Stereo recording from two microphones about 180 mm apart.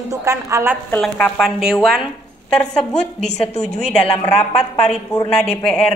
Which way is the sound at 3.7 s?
35° left (ahead or behind).